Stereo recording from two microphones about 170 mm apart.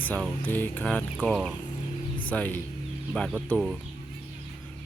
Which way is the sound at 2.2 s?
10° left (ahead or behind).